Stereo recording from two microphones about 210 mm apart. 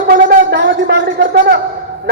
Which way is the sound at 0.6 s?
60° right (ahead or behind).